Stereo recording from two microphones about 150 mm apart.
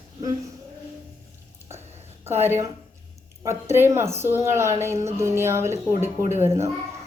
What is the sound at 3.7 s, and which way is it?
A woman's voice, 15° right (ahead or behind).